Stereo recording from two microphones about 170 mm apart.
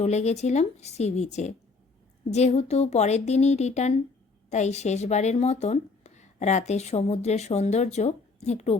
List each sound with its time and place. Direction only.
0.0 s speech: 40° left (ahead or behind)